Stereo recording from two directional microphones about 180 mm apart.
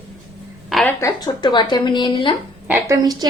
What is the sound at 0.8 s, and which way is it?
Speech, 20° left (ahead or behind).